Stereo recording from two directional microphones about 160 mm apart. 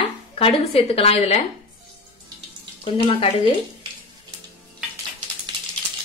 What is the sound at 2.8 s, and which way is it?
Speech, 35° left (ahead or behind).